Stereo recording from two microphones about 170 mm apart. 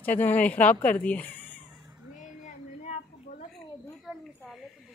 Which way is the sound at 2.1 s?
45° left (ahead or behind).